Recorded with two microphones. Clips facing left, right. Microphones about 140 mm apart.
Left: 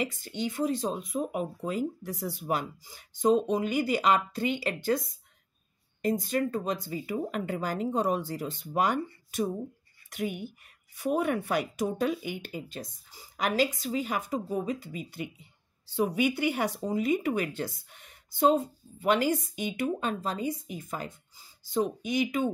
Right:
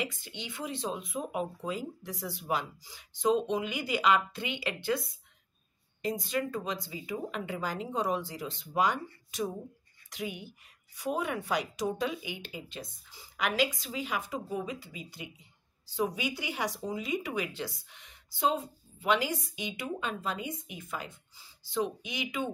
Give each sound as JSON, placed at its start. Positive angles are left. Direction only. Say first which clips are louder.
{"t": 0.0, "sound": "speech", "louder": "left 6 dB", "side_deg": 45}